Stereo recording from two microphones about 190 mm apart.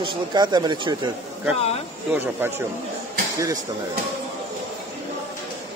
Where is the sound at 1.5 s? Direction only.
30° left (ahead or behind).